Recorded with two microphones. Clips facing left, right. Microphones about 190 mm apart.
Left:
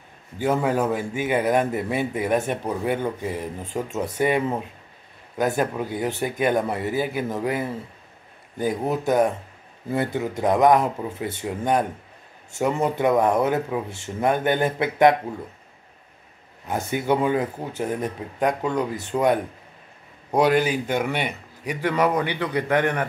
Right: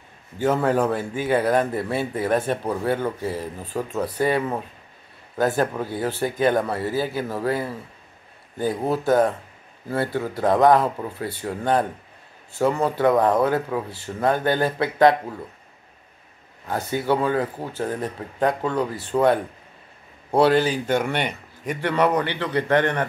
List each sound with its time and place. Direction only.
0.4 s a man's voice: 10° left (ahead or behind)
16.6 s a man's voice: 20° left (ahead or behind)